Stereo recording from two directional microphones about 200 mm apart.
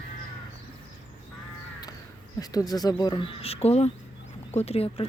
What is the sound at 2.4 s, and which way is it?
Speech, 20° left (ahead or behind).